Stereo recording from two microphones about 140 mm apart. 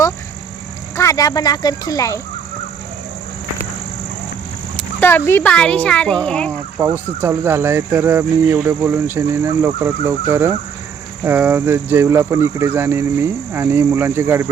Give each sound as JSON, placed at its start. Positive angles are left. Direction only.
{"t": 0.9, "sound": "speech", "side_deg": 25}
{"t": 4.8, "sound": "speech", "side_deg": 15}
{"t": 6.5, "sound": "speech", "side_deg": -15}